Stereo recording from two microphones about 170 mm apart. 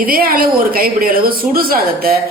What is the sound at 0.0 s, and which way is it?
Speech, 60° right (ahead or behind).